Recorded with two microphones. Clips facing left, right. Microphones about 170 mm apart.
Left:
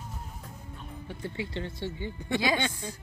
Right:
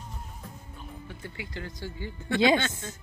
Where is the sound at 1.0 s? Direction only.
30° left (ahead or behind).